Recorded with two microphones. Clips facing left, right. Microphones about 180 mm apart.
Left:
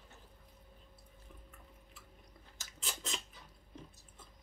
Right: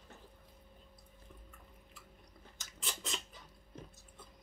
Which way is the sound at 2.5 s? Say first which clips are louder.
Even; centre (ahead or behind).